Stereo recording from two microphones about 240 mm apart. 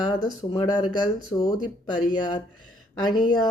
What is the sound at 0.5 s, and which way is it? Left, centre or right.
Speech, centre.